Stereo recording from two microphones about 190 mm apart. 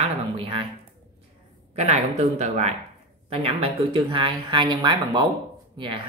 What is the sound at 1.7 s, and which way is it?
Speech, 35° right (ahead or behind).